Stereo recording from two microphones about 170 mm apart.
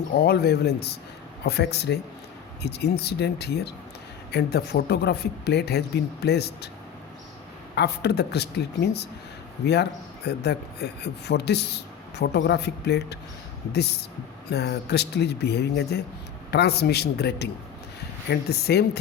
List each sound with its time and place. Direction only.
0.1 s speech: 70° left (ahead or behind)
7.8 s speech: 80° left
10.2 s speech: 80° left
14.5 s speech: 75° left (ahead or behind)